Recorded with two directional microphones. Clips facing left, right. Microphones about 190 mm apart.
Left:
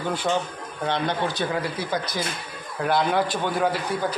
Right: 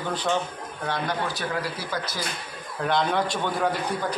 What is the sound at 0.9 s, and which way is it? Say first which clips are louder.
Speech: left 3 dB; 25° left (ahead or behind).